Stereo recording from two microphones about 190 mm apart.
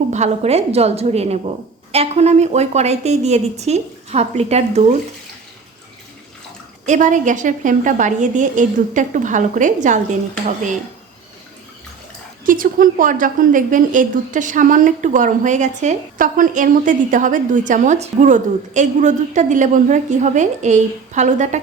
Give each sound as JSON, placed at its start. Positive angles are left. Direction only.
{"t": 0.1, "sound": "a woman's voice", "side_deg": -35}
{"t": 6.8, "sound": "a woman's voice", "side_deg": -40}
{"t": 12.5, "sound": "a woman's voice", "side_deg": -45}